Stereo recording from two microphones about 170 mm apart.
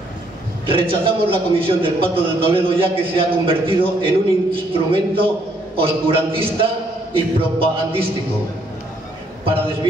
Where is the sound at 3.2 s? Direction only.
30° right (ahead or behind).